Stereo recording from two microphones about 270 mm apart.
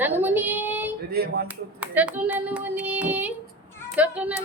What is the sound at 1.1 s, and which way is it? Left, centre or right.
Speech, right.